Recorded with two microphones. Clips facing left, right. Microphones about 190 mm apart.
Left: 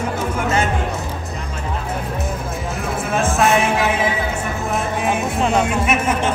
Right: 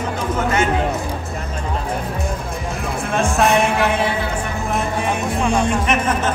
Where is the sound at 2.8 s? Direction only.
Centre (ahead or behind).